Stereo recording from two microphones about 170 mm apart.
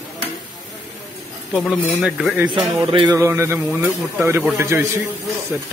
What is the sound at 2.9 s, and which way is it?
Music, 30° right (ahead or behind).